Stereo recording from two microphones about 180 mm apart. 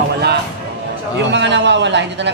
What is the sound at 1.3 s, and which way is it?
A man's voice, 80° right.